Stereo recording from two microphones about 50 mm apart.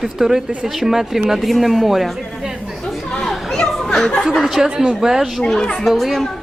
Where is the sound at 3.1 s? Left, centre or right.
Centre.